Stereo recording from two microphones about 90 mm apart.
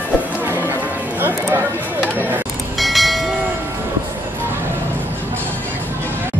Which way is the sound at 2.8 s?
Centre (ahead or behind).